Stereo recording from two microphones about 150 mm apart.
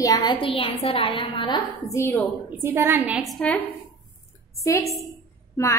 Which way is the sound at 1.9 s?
15° left (ahead or behind).